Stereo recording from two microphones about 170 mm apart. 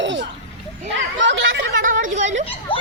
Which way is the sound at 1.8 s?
50° right (ahead or behind).